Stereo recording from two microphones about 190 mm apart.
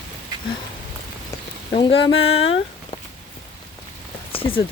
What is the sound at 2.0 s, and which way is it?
Speech, 90° left.